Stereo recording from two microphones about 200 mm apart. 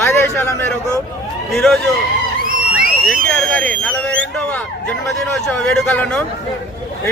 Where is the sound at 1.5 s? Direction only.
5° left (ahead or behind).